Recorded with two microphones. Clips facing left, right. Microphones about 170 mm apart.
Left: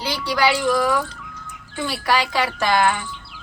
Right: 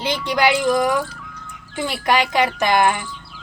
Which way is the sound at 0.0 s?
20° right (ahead or behind).